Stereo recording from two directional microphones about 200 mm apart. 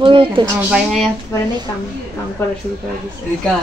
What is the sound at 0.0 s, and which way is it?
Speech, 25° right (ahead or behind).